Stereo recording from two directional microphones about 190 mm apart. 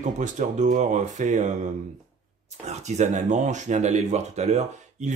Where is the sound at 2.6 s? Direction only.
35° right (ahead or behind).